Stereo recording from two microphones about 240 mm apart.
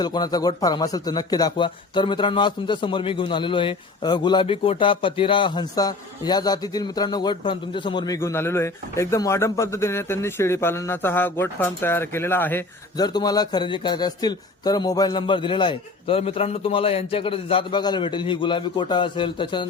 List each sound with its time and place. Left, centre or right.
0.0 s speech: centre